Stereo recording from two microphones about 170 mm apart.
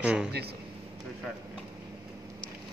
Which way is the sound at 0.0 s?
5° right (ahead or behind).